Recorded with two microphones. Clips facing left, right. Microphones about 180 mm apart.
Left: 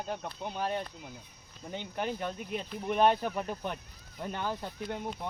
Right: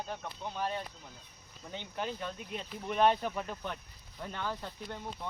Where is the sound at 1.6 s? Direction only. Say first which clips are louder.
Left 3 dB; 20° left (ahead or behind).